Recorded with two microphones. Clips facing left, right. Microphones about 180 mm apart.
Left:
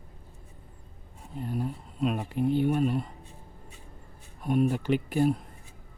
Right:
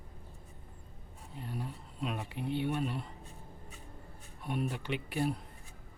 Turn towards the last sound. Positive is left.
turn(degrees=45)  # may be behind; listen again after turning